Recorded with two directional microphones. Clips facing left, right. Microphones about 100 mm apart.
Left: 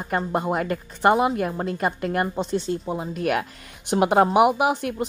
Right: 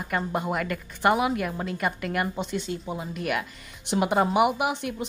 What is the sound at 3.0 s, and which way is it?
A woman's voice, 45° left (ahead or behind).